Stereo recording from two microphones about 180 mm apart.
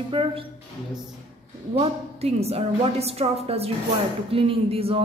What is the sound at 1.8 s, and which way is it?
A woman's voice, 35° right (ahead or behind).